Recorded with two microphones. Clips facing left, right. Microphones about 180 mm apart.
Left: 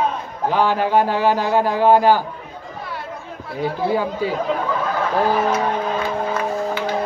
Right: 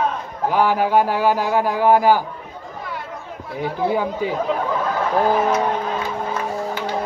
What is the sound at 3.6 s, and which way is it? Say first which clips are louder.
Speech: left 1 dB; 15° right (ahead or behind).